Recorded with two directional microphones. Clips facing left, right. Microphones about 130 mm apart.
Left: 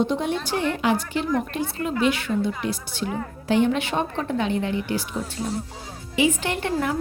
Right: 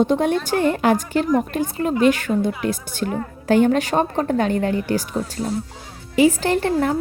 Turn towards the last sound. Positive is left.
turn(degrees=-35)  # may be behind; listen again after turning